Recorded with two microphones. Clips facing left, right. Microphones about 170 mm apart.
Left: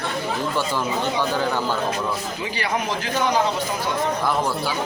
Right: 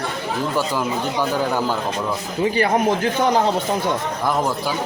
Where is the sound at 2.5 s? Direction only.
45° right (ahead or behind).